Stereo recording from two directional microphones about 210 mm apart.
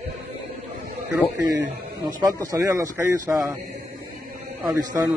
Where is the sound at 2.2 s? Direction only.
15° right (ahead or behind).